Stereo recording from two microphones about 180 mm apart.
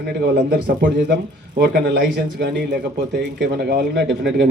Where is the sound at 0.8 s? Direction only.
75° right (ahead or behind).